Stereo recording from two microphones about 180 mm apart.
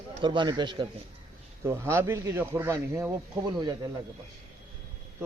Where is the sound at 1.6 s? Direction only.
15° right (ahead or behind).